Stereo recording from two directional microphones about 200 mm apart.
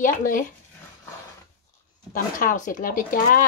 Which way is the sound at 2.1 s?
40° left (ahead or behind).